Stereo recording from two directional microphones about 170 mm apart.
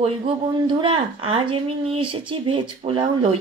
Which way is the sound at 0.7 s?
30° right (ahead or behind).